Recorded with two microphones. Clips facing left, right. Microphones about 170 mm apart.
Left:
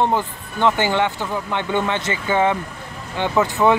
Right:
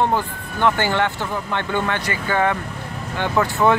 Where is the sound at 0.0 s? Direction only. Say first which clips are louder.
Left 1 dB; 20° left (ahead or behind).